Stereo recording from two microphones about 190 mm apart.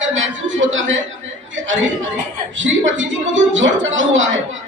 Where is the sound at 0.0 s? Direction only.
80° right.